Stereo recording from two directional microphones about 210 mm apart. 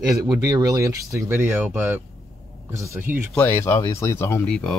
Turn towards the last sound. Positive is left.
turn(degrees=5)  # may be behind; listen again after turning